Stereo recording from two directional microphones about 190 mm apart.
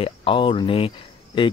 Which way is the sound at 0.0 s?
25° left (ahead or behind).